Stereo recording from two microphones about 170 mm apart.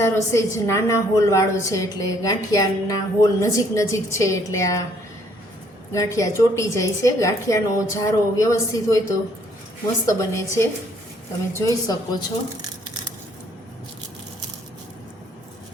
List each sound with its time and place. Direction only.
0.0 s a woman's voice: 15° left (ahead or behind)
5.9 s a woman's voice: 20° left (ahead or behind)
10.1 s a woman's voice: 15° left (ahead or behind)